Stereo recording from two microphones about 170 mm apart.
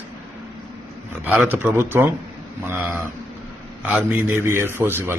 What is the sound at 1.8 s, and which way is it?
A man's voice, 10° right (ahead or behind).